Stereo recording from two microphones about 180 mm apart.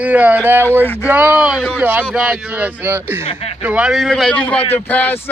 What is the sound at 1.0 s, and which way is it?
Speech, 10° right (ahead or behind).